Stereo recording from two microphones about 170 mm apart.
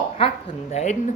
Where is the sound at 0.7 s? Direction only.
40° left (ahead or behind).